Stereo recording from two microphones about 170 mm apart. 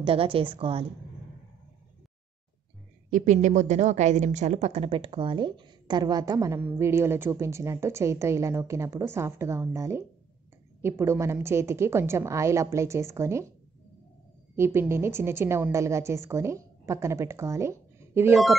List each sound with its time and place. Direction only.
0.0 s a woman's voice: 35° right (ahead or behind)
3.1 s a woman's voice: 45° right (ahead or behind); by 13.5 s 15° right (ahead or behind)
14.5 s a woman's voice: 15° right (ahead or behind)